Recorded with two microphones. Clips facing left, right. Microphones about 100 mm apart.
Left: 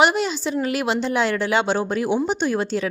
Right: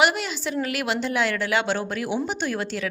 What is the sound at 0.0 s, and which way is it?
A woman's voice, 25° left (ahead or behind).